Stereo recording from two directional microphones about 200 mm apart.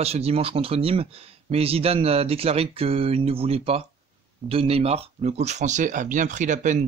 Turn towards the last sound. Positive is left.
turn(degrees=-40)  # may be behind; listen again after turning